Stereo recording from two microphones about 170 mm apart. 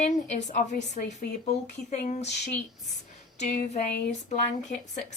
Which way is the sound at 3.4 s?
45° left (ahead or behind).